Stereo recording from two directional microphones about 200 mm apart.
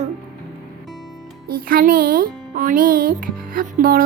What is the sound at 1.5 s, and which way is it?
Speech, 45° right (ahead or behind).